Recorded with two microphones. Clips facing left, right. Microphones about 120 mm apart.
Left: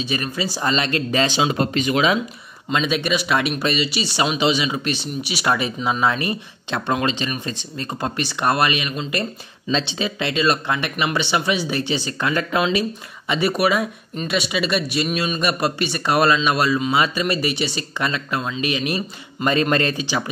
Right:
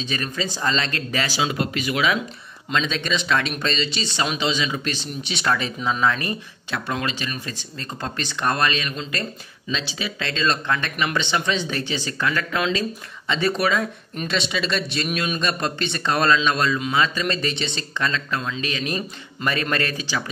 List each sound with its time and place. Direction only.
0.1 s speech: 15° left (ahead or behind)
2.7 s speech: 10° left (ahead or behind)
9.7 s speech: 30° left (ahead or behind)